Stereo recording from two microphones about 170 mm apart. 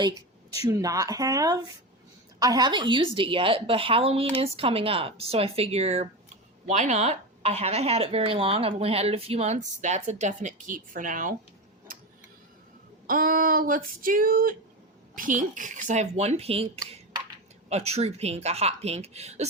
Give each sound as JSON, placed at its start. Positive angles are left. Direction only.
{"t": 0.5, "sound": "speech", "side_deg": -20}
{"t": 13.1, "sound": "a sound", "side_deg": -55}
{"t": 15.1, "sound": "a child's voice", "side_deg": -50}